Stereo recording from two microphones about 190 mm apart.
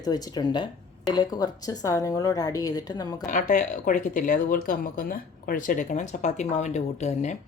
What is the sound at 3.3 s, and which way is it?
A woman's voice, 40° left (ahead or behind).